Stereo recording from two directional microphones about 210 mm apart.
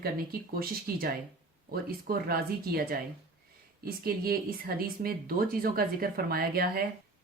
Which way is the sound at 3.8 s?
45° right (ahead or behind).